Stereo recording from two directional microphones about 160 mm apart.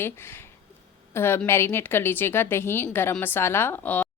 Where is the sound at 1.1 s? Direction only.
15° left (ahead or behind).